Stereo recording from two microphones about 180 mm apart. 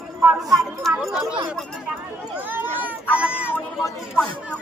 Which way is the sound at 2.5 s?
10° right (ahead or behind).